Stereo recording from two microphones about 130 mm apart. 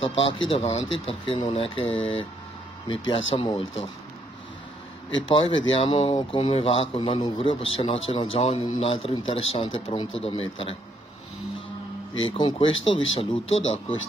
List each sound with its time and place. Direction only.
0.0 s speech: 45° left (ahead or behind)
5.3 s speech: 40° left (ahead or behind)
12.1 s speech: 40° left (ahead or behind)